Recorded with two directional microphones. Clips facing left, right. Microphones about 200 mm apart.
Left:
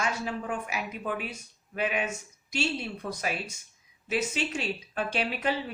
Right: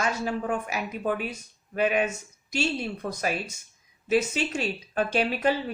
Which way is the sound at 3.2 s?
40° right (ahead or behind).